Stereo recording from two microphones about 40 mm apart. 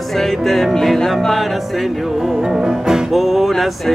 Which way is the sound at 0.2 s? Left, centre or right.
Centre.